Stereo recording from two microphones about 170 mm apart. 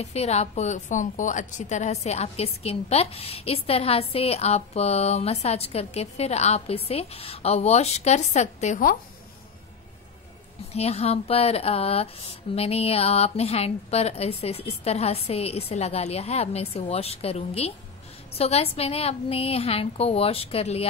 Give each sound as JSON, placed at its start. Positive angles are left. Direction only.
{"t": 0.0, "sound": "a woman's voice", "side_deg": 40}
{"t": 10.7, "sound": "a woman's voice", "side_deg": 35}